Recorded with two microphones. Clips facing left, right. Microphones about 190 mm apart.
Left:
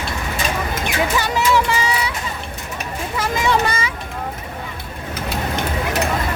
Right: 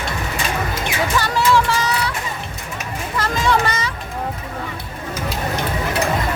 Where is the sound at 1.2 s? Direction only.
15° left (ahead or behind).